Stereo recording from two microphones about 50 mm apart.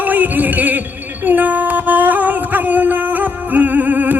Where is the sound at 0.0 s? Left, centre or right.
Right.